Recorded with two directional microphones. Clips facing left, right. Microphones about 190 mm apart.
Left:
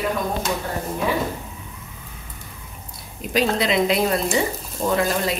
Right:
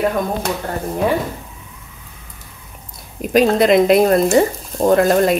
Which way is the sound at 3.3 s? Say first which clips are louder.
Right 8 dB; 50° right (ahead or behind).